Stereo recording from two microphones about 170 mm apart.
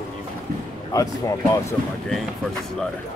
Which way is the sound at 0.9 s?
20° left (ahead or behind).